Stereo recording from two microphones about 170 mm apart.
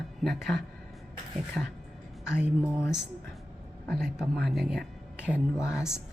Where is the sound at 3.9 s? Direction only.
Centre (ahead or behind).